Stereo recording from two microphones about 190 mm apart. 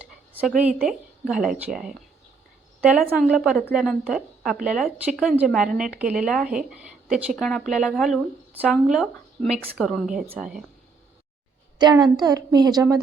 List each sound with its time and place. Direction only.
0.0 s a woman's voice: 5° right (ahead or behind)
11.8 s a woman's voice: 20° right (ahead or behind)